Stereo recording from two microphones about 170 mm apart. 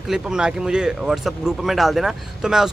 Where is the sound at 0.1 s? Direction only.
5° right (ahead or behind).